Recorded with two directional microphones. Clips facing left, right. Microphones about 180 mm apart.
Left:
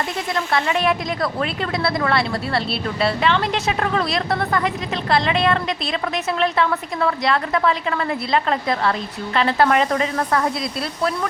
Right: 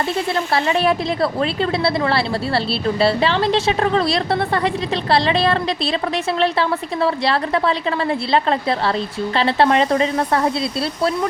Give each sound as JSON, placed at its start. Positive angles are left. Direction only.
{"t": 0.3, "sound": "a woman's voice", "side_deg": -30}